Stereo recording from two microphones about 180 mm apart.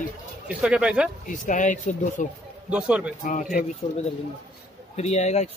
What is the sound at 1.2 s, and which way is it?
Speech, 45° left (ahead or behind).